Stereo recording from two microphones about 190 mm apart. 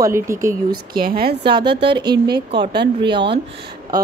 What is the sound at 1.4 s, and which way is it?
Speech, 25° right (ahead or behind).